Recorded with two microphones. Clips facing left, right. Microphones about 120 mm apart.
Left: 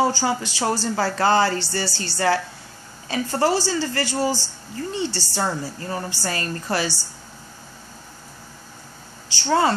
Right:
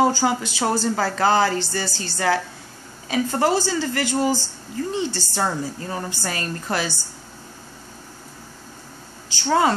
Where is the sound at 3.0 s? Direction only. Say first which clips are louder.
Right 1 dB; 10° right (ahead or behind).